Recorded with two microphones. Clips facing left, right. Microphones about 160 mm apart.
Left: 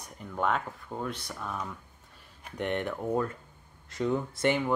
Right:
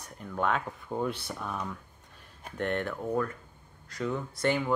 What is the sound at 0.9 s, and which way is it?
Speech, 10° right (ahead or behind).